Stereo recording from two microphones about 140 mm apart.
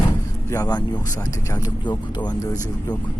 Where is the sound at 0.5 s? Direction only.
25° left (ahead or behind).